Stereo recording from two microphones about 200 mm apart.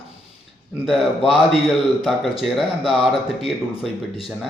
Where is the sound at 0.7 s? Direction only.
5° right (ahead or behind).